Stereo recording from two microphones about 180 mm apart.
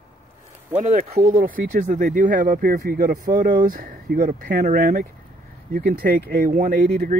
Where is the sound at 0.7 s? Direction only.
40° right (ahead or behind).